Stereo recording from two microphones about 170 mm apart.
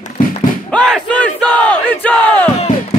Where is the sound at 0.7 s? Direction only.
5° left (ahead or behind).